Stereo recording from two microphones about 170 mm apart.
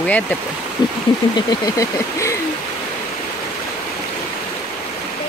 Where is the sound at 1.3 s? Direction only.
20° left (ahead or behind).